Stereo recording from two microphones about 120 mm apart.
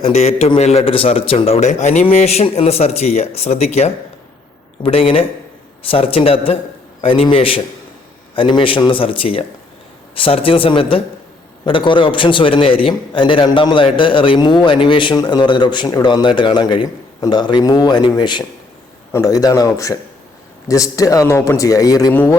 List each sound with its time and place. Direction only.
0.0 s a man's voice: 65° left (ahead or behind)
2.0 s a man's voice: 60° left (ahead or behind)
4.8 s a man's voice: 50° left (ahead or behind); by 22.1 s 30° left (ahead or behind)
22.1 s speech: 15° left (ahead or behind)